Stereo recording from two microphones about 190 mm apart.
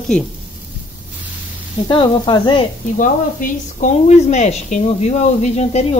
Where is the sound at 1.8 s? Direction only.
25° left (ahead or behind).